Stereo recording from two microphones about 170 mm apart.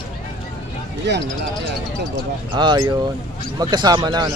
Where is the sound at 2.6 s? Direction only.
25° right (ahead or behind).